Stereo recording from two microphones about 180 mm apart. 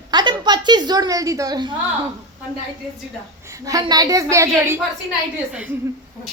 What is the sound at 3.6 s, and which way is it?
A woman's voice, 20° right (ahead or behind).